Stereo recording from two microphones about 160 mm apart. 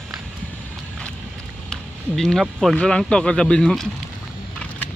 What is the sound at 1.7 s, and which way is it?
Speech, 5° left (ahead or behind).